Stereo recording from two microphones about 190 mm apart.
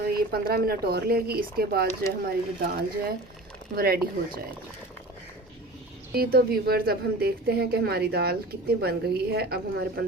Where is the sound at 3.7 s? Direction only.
50° right (ahead or behind).